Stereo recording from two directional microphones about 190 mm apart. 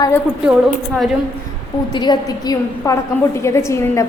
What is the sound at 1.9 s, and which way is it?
A woman's voice, 20° left (ahead or behind).